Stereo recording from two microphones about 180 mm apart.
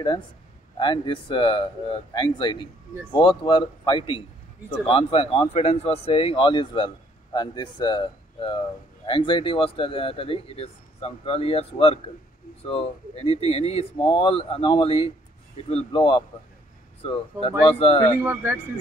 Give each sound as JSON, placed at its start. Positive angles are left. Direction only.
{"t": 0.7, "sound": "a man's voice", "side_deg": 25}
{"t": 18.2, "sound": "speech", "side_deg": -10}